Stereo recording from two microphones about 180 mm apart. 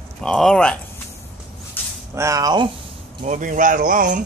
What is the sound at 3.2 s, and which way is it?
Speech, 45° right (ahead or behind).